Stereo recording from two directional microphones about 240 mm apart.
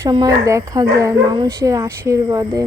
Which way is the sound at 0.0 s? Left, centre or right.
Centre.